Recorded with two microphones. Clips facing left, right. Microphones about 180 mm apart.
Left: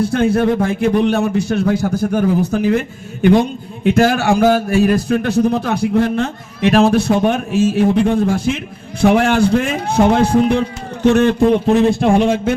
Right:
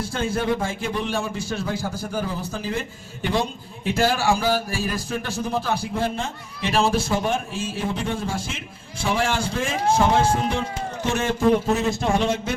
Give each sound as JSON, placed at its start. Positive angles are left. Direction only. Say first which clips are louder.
{"t": 0.0, "sound": "a man's voice", "louder": "left 11 dB", "side_deg": 60}
{"t": 3.8, "sound": "a man's voice", "louder": "left 8 dB", "side_deg": 65}